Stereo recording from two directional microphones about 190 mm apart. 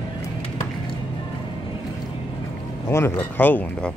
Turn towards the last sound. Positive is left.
turn(degrees=5)  # may be behind; listen again after turning